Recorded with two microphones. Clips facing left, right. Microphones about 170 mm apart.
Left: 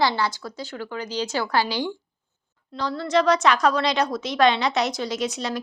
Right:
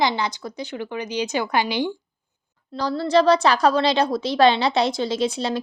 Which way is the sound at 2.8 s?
35° right (ahead or behind).